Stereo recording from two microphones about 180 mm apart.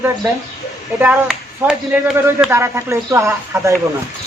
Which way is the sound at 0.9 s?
10° right (ahead or behind).